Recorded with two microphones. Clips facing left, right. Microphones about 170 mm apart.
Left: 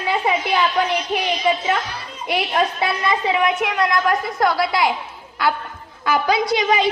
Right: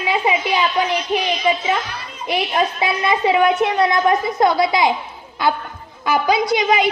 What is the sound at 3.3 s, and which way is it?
A woman's voice, 30° right (ahead or behind).